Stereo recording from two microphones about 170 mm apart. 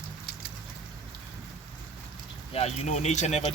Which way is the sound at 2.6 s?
40° left (ahead or behind).